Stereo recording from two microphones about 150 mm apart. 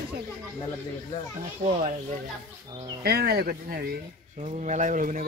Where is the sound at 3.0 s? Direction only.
90° right.